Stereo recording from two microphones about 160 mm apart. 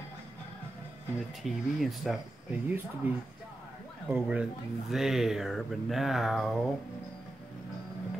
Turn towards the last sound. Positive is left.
turn(degrees=0)  # may be behind; listen again after turning